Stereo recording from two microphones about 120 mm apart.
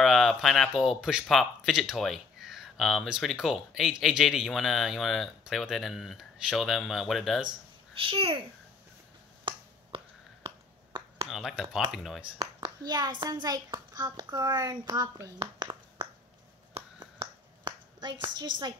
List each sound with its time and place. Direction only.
0.0 s speech: centre (ahead or behind)
8.0 s a child's voice: 50° right (ahead or behind)
9.4 s finger snapping: 40° right (ahead or behind)
11.2 s speech: centre (ahead or behind)
12.5 s a child's voice: 35° right (ahead or behind)
15.6 s a sound: 40° right (ahead or behind)
17.2 s finger snapping: 40° right (ahead or behind)